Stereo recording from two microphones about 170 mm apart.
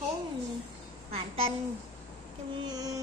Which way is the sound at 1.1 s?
35° right (ahead or behind).